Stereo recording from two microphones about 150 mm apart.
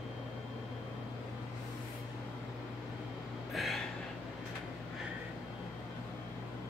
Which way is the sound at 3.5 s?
Centre (ahead or behind).